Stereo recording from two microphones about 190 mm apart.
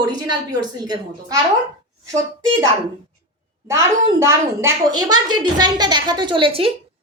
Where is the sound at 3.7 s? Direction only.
15° right (ahead or behind).